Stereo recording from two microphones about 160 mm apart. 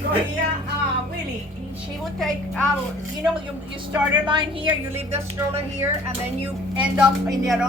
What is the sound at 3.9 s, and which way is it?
Speech, 30° right (ahead or behind).